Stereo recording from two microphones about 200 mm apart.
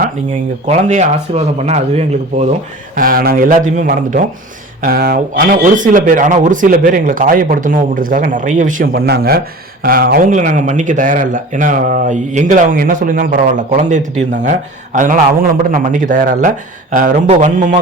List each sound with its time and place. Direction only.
0.7 s speech: 35° right (ahead or behind)
2.9 s speech: 45° right (ahead or behind)